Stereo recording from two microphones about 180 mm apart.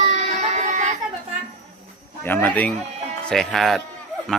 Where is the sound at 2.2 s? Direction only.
10° left (ahead or behind).